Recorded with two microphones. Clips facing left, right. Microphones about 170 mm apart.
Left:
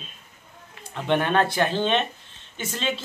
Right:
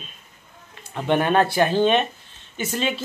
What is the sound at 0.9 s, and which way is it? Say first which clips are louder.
Speech: right 3 dB; 10° right (ahead or behind).